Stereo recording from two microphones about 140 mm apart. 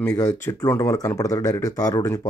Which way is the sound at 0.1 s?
25° left (ahead or behind).